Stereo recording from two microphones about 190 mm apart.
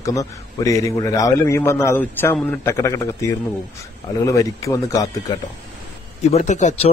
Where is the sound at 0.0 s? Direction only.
15° left (ahead or behind).